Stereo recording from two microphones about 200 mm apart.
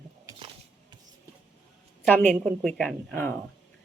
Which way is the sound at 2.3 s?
Centre (ahead or behind).